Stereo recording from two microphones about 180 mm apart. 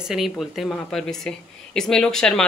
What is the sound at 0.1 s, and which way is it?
A woman's voice, centre (ahead or behind).